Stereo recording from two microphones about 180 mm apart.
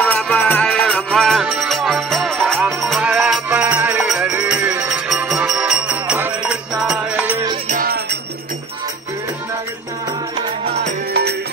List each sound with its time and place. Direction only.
0.0 s music: 10° left (ahead or behind); by 7.4 s 10° right (ahead or behind)
7.6 s music: 50° right (ahead or behind)